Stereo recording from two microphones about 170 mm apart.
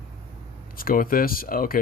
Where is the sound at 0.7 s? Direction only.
55° left (ahead or behind).